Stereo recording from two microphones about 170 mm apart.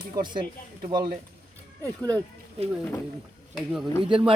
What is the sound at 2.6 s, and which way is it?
Speech, 35° right (ahead or behind).